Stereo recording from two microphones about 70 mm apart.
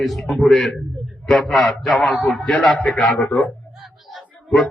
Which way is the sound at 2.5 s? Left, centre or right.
Centre.